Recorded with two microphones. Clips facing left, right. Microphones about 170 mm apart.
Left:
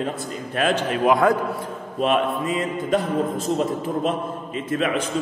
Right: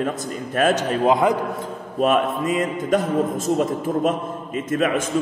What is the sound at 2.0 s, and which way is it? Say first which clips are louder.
A man's voice: right 2 dB; 45° right (ahead or behind).